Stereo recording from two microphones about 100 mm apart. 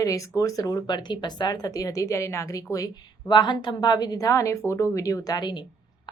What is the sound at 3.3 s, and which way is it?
A woman's voice, 45° left (ahead or behind).